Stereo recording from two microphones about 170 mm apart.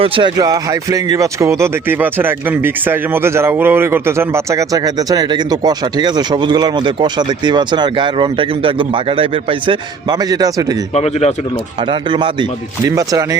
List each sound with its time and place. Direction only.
0.0 s speech: 30° right (ahead or behind)
10.9 s speech: 40° left (ahead or behind)
11.8 s speech: 30° right (ahead or behind)